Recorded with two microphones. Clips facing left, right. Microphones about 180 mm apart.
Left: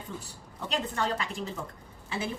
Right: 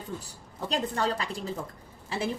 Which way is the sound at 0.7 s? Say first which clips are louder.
Right 2 dB; 35° right (ahead or behind).